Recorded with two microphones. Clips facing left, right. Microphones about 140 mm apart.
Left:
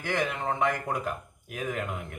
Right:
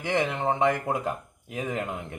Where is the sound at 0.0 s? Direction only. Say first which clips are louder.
Right 4 dB; 20° right (ahead or behind).